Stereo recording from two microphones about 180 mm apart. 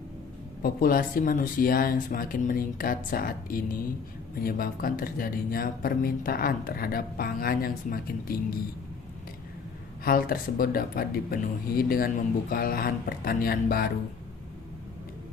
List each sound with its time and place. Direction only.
0.6 s speech: 55° left (ahead or behind)
10.0 s speech: 55° left (ahead or behind)